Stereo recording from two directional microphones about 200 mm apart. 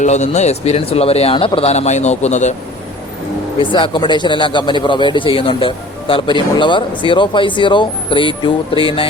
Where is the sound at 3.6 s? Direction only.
25° left (ahead or behind).